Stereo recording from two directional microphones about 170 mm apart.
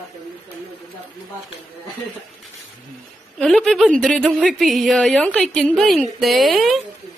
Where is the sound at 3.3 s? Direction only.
Centre (ahead or behind).